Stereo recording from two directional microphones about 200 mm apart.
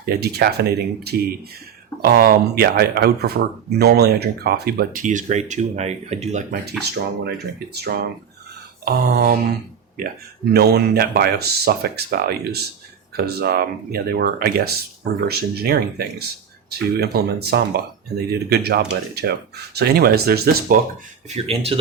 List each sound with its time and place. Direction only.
0.0 s speech: 50° right (ahead or behind); by 6.6 s 35° right (ahead or behind)
6.7 s speech: 55° right (ahead or behind)
10.5 s speech: 55° right (ahead or behind)
21.2 s speech: 30° right (ahead or behind)